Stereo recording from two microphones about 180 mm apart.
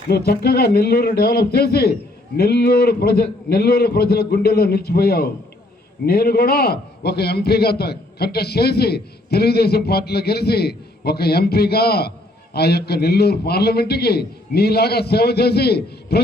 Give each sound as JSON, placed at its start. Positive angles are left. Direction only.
{"t": 0.1, "sound": "a man's voice", "side_deg": 65}